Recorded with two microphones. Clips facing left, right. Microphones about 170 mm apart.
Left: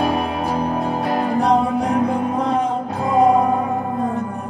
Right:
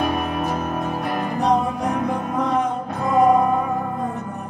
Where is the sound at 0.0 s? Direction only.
30° left (ahead or behind).